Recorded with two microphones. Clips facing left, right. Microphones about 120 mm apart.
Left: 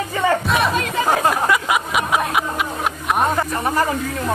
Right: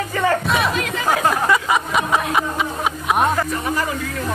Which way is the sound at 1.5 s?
5° left (ahead or behind).